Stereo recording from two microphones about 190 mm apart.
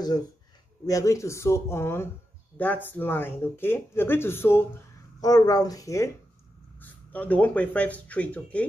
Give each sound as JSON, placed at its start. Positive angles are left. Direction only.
{"t": 0.8, "sound": "speech", "side_deg": 15}